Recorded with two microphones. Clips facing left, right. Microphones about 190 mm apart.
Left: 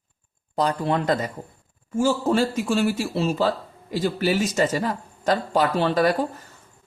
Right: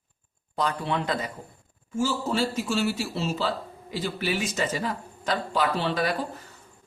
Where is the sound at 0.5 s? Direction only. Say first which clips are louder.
Left 5 dB; 40° left (ahead or behind).